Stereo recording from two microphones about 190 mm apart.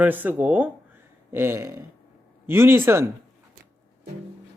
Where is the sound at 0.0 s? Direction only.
10° right (ahead or behind).